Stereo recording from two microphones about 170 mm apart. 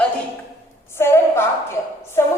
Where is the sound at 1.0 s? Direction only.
15° left (ahead or behind).